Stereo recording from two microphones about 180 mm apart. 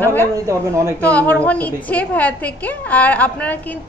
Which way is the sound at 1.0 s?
10° left (ahead or behind).